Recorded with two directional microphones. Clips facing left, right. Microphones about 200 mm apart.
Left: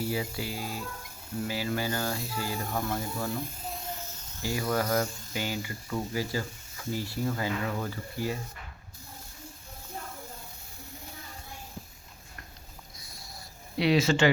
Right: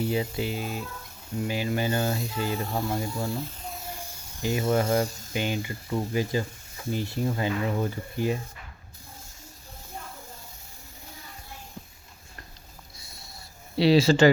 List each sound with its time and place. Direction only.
0.1 s speech: 20° right (ahead or behind)
3.8 s speech: 10° right (ahead or behind)
13.0 s a sound: 25° right (ahead or behind)
13.7 s speech: 30° right (ahead or behind)